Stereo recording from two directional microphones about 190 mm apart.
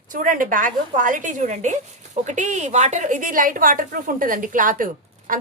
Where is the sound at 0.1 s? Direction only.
45° right (ahead or behind).